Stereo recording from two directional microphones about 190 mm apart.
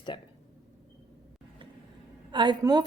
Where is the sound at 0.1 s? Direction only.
25° left (ahead or behind).